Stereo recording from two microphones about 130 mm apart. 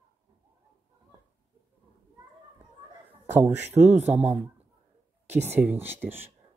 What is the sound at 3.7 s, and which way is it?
Speech, 60° right (ahead or behind).